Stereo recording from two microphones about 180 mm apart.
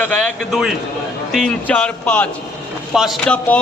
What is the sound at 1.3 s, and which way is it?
A man's voice, 5° left (ahead or behind).